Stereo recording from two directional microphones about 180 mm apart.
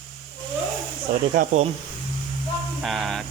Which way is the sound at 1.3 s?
45° right (ahead or behind).